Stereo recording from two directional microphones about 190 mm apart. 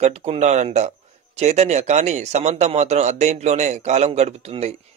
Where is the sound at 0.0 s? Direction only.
35° right (ahead or behind).